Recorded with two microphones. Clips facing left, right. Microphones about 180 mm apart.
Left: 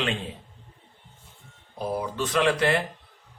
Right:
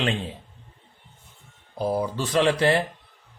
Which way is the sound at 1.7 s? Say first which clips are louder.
Right 3 dB; 30° right (ahead or behind).